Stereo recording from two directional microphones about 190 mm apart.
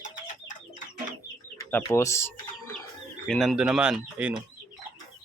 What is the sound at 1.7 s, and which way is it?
Speech, 10° left (ahead or behind).